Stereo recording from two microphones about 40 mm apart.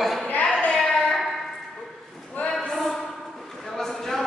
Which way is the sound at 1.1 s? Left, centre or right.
Centre.